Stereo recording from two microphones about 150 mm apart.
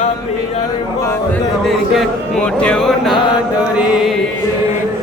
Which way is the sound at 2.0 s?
5° left (ahead or behind).